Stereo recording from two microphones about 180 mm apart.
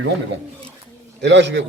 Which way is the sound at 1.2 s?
75° right (ahead or behind).